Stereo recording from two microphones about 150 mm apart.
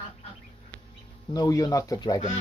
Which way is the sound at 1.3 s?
25° left (ahead or behind).